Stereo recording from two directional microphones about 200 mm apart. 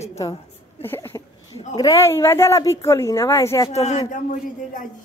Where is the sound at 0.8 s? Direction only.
10° left (ahead or behind).